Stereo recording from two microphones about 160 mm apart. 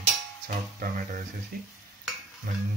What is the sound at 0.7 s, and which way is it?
Speech, 55° right (ahead or behind).